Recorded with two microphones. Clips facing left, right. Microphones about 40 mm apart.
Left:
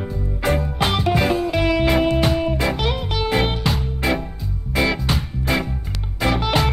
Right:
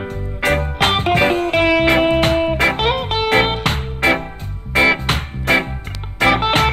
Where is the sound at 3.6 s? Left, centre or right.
Right.